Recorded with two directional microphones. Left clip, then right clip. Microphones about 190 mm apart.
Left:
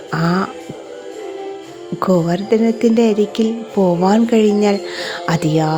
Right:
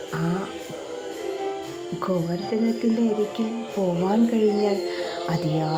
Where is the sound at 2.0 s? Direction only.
55° left (ahead or behind).